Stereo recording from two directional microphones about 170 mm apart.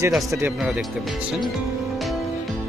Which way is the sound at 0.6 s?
5° right (ahead or behind).